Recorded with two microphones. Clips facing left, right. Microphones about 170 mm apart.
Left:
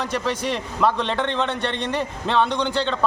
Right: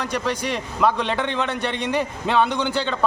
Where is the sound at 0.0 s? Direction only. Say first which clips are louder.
Even; centre (ahead or behind).